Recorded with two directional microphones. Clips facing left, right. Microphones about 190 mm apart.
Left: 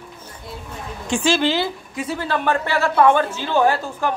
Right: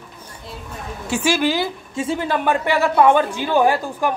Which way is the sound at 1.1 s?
10° right (ahead or behind).